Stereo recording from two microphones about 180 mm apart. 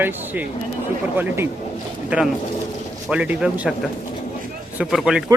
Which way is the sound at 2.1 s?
5° right (ahead or behind).